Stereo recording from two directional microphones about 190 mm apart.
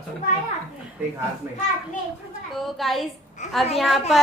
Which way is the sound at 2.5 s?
Centre (ahead or behind).